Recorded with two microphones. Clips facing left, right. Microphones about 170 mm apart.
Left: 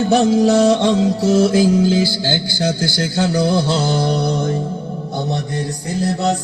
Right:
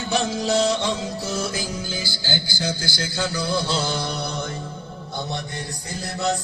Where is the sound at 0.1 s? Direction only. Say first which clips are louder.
Left 8 dB; 55° left (ahead or behind).